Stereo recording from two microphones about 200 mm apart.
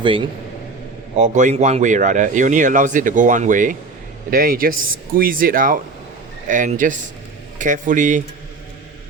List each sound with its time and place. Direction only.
1.1 s speech: 40° right (ahead or behind)